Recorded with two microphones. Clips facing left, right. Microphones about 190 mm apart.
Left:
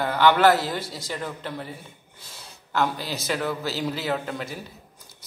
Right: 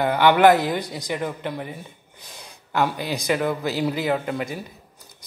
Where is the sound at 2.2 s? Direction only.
15° right (ahead or behind).